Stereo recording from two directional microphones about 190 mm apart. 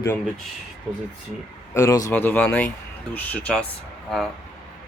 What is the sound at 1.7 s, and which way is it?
A man's voice, 15° left (ahead or behind).